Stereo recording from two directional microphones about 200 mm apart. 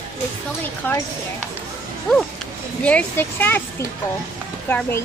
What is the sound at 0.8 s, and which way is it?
Speech, 10° left (ahead or behind).